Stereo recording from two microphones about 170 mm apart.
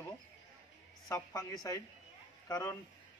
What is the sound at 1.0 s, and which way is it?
A man's voice, 20° left (ahead or behind).